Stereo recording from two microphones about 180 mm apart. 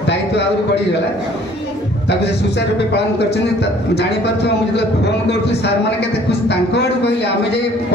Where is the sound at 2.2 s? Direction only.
70° left (ahead or behind).